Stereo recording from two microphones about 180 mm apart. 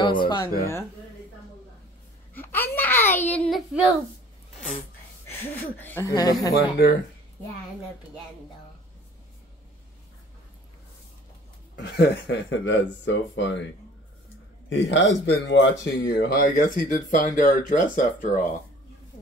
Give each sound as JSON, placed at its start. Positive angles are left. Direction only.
{"t": 0.0, "sound": "speech", "side_deg": 25}
{"t": 2.3, "sound": "a child's voice", "side_deg": 10}
{"t": 5.3, "sound": "a child's voice", "side_deg": 10}
{"t": 6.5, "sound": "speech", "side_deg": 65}
{"t": 11.7, "sound": "speech", "side_deg": 75}
{"t": 14.7, "sound": "speech", "side_deg": 90}